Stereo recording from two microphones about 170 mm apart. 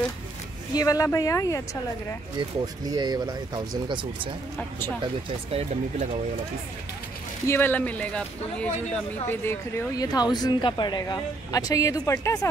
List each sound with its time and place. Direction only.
0.7 s speech: 20° left (ahead or behind)
2.6 s speech: 20° right (ahead or behind)
4.6 s speech: 10° left (ahead or behind)
5.0 s speech: 35° right (ahead or behind)
7.4 s speech: 10° left (ahead or behind)